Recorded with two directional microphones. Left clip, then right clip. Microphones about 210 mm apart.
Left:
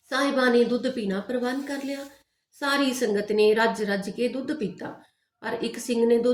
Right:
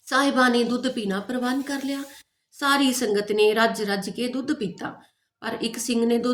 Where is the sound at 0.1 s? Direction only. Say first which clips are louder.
Right 2 dB; 50° right (ahead or behind).